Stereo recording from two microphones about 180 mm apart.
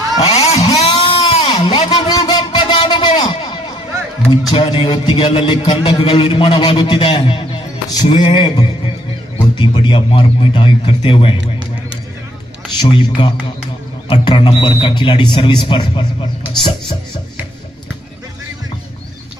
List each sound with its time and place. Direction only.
0.2 s vehicle: 35° left (ahead or behind)
0.7 s a sound: 30° left (ahead or behind)
4.3 s a man's voice: 25° left (ahead or behind)
12.8 s a man's voice: 30° left (ahead or behind)